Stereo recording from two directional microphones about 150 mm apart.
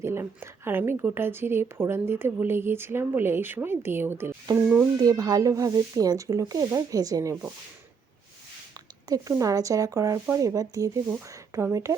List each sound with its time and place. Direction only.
0.0 s speech: 15° right (ahead or behind)
4.9 s speech: 25° right (ahead or behind)
9.0 s speech: 25° right (ahead or behind)